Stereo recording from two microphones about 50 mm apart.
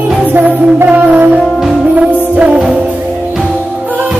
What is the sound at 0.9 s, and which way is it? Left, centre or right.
Music, right.